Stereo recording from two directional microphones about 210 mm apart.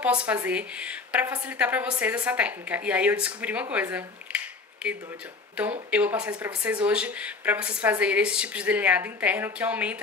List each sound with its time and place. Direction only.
0.0 s speech: 5° right (ahead or behind)
5.9 s speech: 5° right (ahead or behind)